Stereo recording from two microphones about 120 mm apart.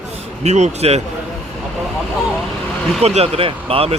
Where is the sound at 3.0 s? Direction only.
60° right (ahead or behind).